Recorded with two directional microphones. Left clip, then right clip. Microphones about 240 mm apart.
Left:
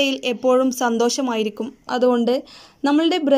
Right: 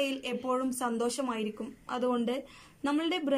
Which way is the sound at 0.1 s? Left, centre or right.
Left.